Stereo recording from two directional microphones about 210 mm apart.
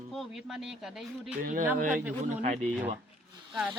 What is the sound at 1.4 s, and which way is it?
Speech, 40° right (ahead or behind).